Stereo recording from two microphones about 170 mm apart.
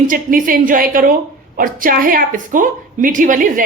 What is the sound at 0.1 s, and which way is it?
A woman's voice, 55° right (ahead or behind).